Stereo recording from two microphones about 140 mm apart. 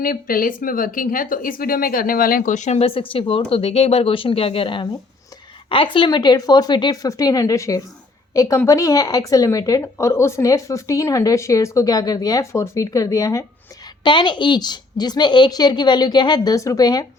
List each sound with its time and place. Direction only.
0.0 s a woman's voice: 90° left; by 13.4 s 25° left (ahead or behind)
14.0 s speech: 35° left (ahead or behind)